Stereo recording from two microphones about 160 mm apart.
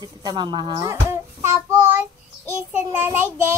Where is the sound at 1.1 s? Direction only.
15° right (ahead or behind).